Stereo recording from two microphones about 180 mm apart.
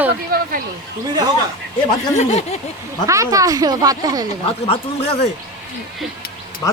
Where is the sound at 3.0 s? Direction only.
15° right (ahead or behind).